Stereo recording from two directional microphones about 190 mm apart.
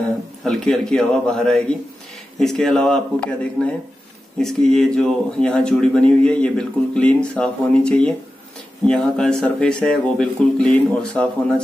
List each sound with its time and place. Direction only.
0.4 s speech: centre (ahead or behind)